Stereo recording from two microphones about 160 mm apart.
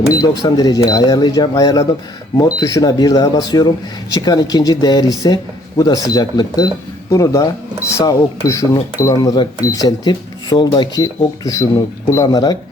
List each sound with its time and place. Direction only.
0.1 s speech: 25° left (ahead or behind)